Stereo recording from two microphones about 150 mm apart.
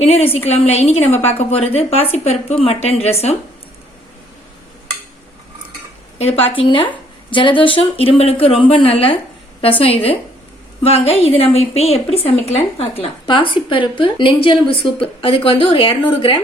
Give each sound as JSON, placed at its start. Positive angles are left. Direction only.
{"t": 0.0, "sound": "a woman's voice", "side_deg": 40}
{"t": 6.6, "sound": "a woman's voice", "side_deg": 35}